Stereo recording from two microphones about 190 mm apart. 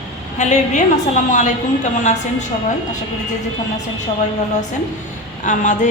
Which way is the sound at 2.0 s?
40° left (ahead or behind).